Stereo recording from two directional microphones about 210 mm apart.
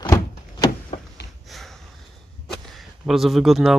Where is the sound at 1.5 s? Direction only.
Centre (ahead or behind).